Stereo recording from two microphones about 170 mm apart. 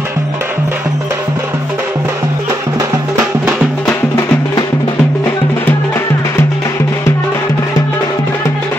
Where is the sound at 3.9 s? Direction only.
15° left (ahead or behind).